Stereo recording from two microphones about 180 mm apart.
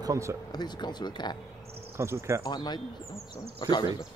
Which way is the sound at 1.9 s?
15° right (ahead or behind).